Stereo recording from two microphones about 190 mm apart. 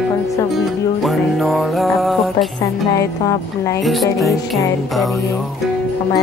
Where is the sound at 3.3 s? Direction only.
15° left (ahead or behind).